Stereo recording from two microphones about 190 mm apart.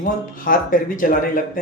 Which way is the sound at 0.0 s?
45° left (ahead or behind).